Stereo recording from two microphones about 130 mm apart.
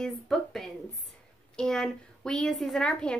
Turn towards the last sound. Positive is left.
turn(degrees=5)  # may be behind; listen again after turning